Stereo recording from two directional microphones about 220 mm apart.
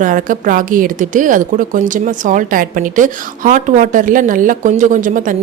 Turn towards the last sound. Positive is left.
turn(degrees=-35)  # may be behind; listen again after turning